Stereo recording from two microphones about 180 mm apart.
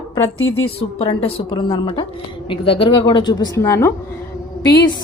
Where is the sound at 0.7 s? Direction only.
30° left (ahead or behind); by 3.9 s 15° left (ahead or behind).